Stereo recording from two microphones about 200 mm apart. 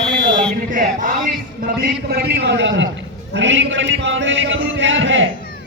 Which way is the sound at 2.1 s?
50° right (ahead or behind).